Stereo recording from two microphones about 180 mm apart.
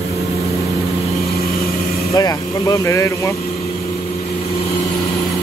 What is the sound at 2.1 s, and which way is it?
Vehicle, 20° left (ahead or behind).